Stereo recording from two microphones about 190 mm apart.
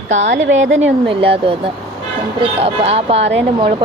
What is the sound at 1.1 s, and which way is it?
Speech, 30° right (ahead or behind).